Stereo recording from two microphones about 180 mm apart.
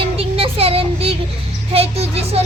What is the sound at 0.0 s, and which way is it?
Child singing, 30° right (ahead or behind).